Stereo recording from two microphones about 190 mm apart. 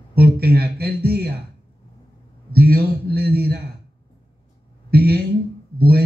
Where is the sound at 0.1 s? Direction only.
55° right (ahead or behind).